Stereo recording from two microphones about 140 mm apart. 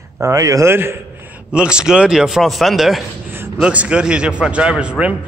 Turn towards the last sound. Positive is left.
turn(degrees=-10)  # may be behind; listen again after turning